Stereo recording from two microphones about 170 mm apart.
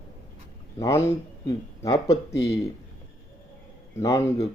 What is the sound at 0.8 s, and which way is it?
Speech, 15° left (ahead or behind).